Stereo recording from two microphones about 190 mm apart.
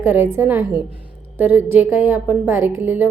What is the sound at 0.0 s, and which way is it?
A woman's voice, 10° right (ahead or behind).